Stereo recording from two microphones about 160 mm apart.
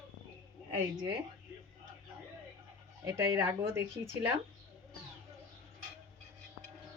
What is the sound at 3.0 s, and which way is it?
Speech, 20° right (ahead or behind).